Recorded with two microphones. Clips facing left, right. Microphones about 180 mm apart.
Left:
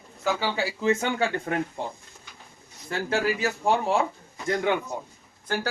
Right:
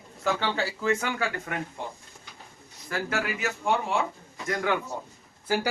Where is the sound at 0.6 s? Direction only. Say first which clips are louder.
Left 2 dB; 15° left (ahead or behind).